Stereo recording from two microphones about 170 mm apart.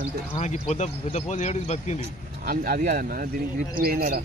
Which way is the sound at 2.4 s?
60° right (ahead or behind).